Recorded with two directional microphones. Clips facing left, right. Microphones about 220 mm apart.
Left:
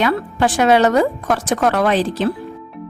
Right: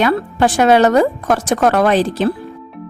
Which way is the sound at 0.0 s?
45° right (ahead or behind).